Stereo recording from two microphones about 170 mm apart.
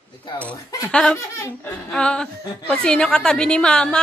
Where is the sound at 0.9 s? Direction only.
5° left (ahead or behind).